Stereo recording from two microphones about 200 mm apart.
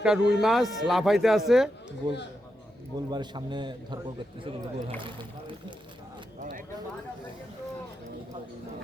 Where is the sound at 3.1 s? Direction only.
20° right (ahead or behind).